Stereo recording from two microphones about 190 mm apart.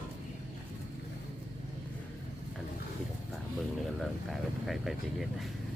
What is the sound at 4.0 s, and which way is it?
Speech, centre (ahead or behind).